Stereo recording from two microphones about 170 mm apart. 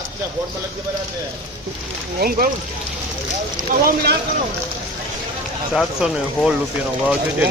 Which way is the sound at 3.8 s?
70° right (ahead or behind).